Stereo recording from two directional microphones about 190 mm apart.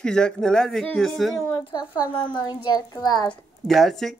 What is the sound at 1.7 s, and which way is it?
A child's voice, 20° left (ahead or behind).